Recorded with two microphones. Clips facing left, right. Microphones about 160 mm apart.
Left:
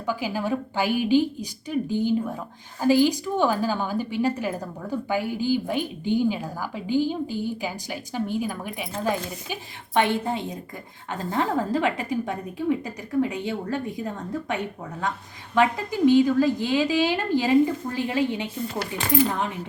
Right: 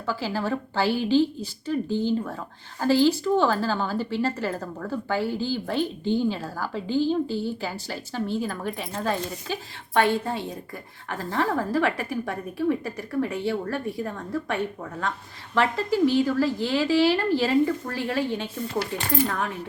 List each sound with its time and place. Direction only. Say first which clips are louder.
0.0 s a woman's voice: left 1 dB; 15° left (ahead or behind)